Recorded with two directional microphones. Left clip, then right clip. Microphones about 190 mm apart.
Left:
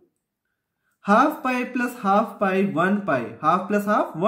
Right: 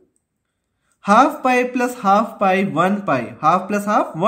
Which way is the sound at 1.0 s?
25° right (ahead or behind).